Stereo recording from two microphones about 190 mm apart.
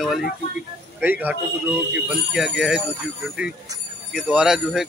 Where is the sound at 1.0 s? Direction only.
10° right (ahead or behind).